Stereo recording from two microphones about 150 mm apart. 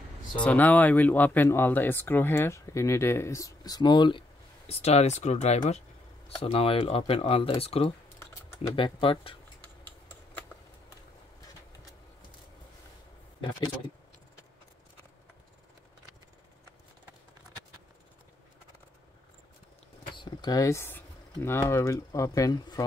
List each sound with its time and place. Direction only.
0.4 s speech: 10° left (ahead or behind); by 4.2 s 30° left (ahead or behind)
4.6 s speech: 45° left (ahead or behind)
20.2 s speech: 25° left (ahead or behind)